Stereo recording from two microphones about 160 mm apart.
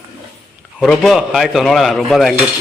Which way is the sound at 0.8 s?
Centre (ahead or behind).